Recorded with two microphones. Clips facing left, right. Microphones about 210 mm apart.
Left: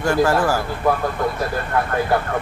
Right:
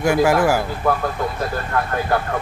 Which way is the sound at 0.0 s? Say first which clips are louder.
Right 2 dB; 10° right (ahead or behind).